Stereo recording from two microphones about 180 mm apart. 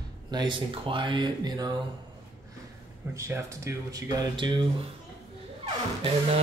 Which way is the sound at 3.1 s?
15° right (ahead or behind).